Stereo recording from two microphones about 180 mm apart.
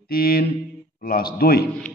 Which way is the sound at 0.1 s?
55° left (ahead or behind).